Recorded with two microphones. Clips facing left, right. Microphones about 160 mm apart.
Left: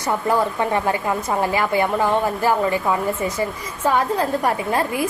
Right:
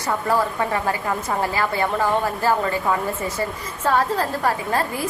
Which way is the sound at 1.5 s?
15° left (ahead or behind).